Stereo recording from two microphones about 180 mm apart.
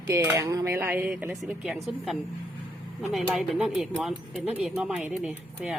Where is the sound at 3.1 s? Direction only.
Centre (ahead or behind).